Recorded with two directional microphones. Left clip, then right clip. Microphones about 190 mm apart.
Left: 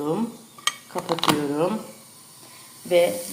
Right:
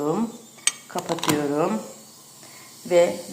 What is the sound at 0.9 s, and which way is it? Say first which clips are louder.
Speech: left 3 dB; 10° left (ahead or behind).